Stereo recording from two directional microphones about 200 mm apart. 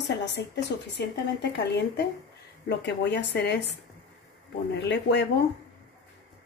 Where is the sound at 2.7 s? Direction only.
60° left (ahead or behind).